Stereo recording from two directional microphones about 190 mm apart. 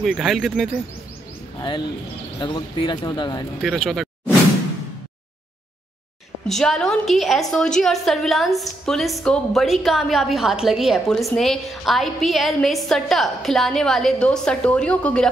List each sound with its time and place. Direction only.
0.0 s a woman's voice: centre (ahead or behind)
2.4 s speech: 20° left (ahead or behind)
3.6 s a woman's voice: centre (ahead or behind)
6.4 s a woman's voice: centre (ahead or behind)